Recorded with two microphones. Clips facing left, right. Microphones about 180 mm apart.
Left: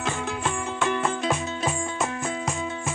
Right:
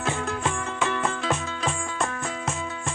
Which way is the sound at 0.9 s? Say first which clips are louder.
Left 4 dB; 15° left (ahead or behind).